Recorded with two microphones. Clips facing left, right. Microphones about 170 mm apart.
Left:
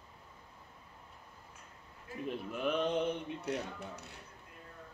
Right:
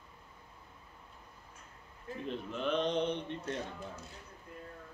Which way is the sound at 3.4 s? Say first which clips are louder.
Left 1 dB; 70° left (ahead or behind).